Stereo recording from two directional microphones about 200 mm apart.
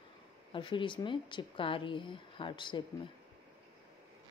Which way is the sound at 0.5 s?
25° left (ahead or behind).